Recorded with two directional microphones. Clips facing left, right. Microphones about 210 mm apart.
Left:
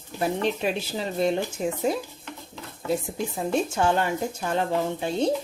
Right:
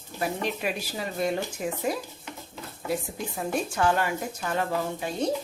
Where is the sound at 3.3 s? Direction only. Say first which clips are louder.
Left 3 dB; 25° left (ahead or behind).